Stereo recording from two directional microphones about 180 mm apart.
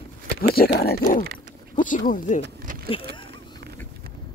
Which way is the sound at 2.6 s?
50° right (ahead or behind).